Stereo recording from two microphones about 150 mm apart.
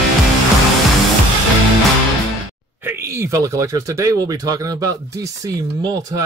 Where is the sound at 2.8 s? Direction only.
15° right (ahead or behind).